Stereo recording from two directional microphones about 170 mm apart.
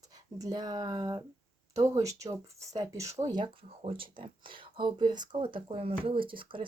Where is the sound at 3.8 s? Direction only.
30° right (ahead or behind).